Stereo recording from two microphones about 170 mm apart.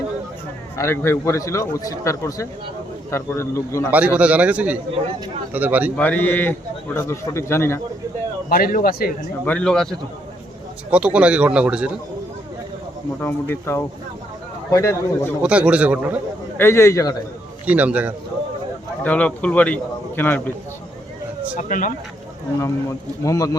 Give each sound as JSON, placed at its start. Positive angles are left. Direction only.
{"t": 0.8, "sound": "a man's voice", "side_deg": 15}
{"t": 3.9, "sound": "a man's voice", "side_deg": -10}
{"t": 6.0, "sound": "a man's voice", "side_deg": 10}
{"t": 8.4, "sound": "a man's voice", "side_deg": 55}
{"t": 9.5, "sound": "a man's voice", "side_deg": 5}
{"t": 13.2, "sound": "a man's voice", "side_deg": 15}
{"t": 15.4, "sound": "a man's voice", "side_deg": -5}
{"t": 16.6, "sound": "a man's voice", "side_deg": 15}
{"t": 17.7, "sound": "a man's voice", "side_deg": -10}
{"t": 19.0, "sound": "a man's voice", "side_deg": 5}
{"t": 21.6, "sound": "speech", "side_deg": 50}
{"t": 22.6, "sound": "a man's voice", "side_deg": 20}